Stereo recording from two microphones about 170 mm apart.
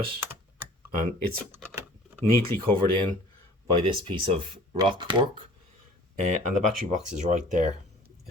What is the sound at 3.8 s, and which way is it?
Speech, 30° right (ahead or behind).